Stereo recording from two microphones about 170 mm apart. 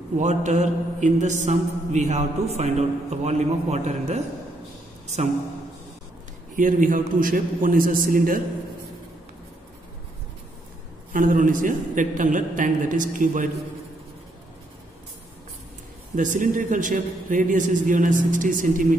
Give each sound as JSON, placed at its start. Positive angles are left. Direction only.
{"t": 0.2, "sound": "mantra", "side_deg": -45}
{"t": 6.5, "sound": "a man's voice", "side_deg": -50}
{"t": 11.1, "sound": "mantra", "side_deg": -50}
{"t": 16.2, "sound": "mantra", "side_deg": -50}